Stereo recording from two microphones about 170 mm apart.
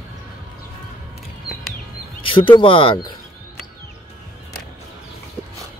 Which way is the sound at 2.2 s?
30° left (ahead or behind).